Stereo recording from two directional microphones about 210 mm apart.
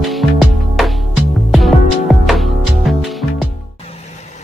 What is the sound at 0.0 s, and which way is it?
Music, centre (ahead or behind).